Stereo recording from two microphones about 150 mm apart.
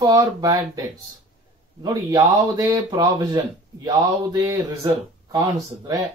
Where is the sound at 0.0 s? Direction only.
25° right (ahead or behind).